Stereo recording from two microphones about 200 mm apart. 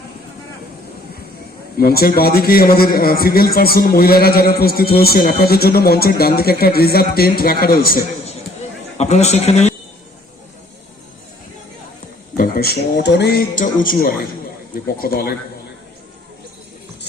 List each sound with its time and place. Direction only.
1.8 s a man's voice: 50° left (ahead or behind)
9.0 s a man's voice: 35° left (ahead or behind)
12.4 s a man's voice: 50° left (ahead or behind)